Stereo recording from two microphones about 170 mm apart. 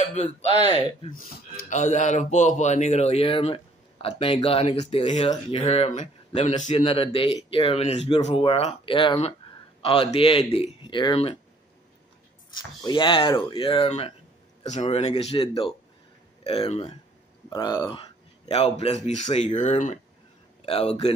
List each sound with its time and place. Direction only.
0.0 s speech: 40° left (ahead or behind)
1.1 s speech: 50° left (ahead or behind)
6.7 s speech: 35° left (ahead or behind)
12.5 s speech: 30° left (ahead or behind)
16.4 s speech: 35° left (ahead or behind)
17.5 s speech: 25° left (ahead or behind)
18.5 s speech: 40° left (ahead or behind)